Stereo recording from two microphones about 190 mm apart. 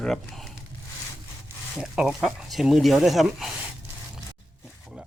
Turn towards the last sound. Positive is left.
turn(degrees=0)  # may be behind; listen again after turning